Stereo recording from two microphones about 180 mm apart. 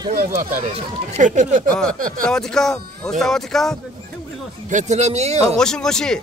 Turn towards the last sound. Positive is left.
turn(degrees=5)  # may be behind; listen again after turning